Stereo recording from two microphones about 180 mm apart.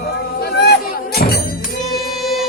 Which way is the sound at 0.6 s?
65° left (ahead or behind).